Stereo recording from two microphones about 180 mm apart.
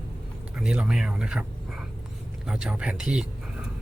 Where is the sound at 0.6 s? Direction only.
5° right (ahead or behind).